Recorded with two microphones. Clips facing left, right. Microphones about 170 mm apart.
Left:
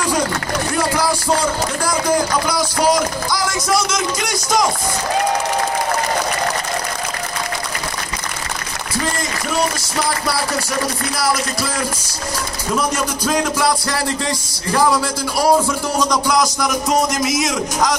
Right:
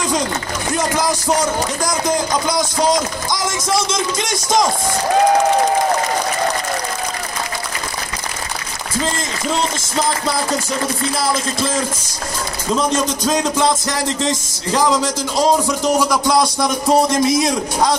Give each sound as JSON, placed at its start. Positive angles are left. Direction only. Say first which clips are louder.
{"t": 0.7, "sound": "speech", "louder": "right 1 dB", "side_deg": -20}
{"t": 11.1, "sound": "speech", "louder": "left 2 dB", "side_deg": -25}